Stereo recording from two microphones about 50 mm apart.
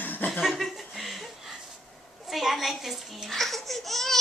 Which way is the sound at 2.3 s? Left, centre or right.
Centre.